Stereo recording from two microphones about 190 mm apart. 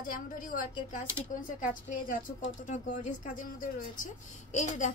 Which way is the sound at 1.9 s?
45° left (ahead or behind).